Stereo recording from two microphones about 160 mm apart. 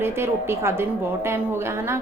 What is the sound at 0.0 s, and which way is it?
A woman's voice, 15° right (ahead or behind).